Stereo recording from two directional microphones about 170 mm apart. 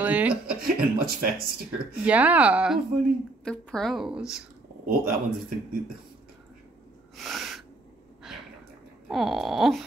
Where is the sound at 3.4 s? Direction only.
5° left (ahead or behind).